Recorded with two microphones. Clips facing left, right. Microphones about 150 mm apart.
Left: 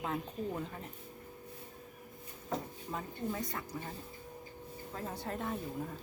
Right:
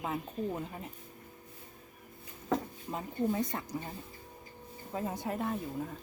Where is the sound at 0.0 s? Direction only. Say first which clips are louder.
Right 2 dB; 5° right (ahead or behind).